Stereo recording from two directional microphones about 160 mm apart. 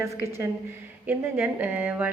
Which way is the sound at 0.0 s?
15° right (ahead or behind).